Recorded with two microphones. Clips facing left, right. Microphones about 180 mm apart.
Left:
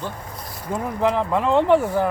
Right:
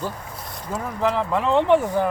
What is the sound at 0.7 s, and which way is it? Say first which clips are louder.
Speech: left 2 dB; 10° left (ahead or behind).